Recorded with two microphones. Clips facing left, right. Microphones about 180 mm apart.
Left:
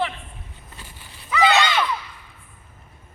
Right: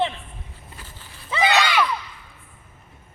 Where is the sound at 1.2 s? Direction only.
25° right (ahead or behind).